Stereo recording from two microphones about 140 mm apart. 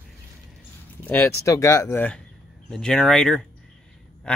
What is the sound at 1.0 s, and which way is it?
Speech, 15° left (ahead or behind).